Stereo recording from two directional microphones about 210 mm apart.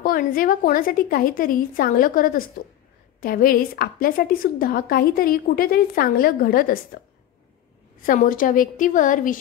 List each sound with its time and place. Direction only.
0.0 s a woman's voice: 40° left (ahead or behind)
8.0 s a woman's voice: 40° left (ahead or behind)